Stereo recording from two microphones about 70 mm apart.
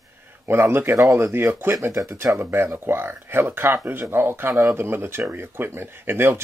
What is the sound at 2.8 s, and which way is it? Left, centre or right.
Speech, right.